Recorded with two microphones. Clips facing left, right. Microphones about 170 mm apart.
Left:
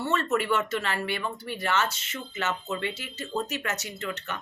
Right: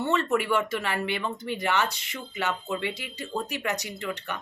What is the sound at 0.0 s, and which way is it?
Speech, 15° right (ahead or behind).